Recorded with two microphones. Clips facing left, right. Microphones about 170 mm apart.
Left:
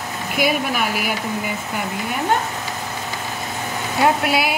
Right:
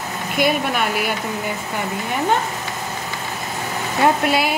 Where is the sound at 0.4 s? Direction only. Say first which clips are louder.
Right 1 dB; 5° left (ahead or behind).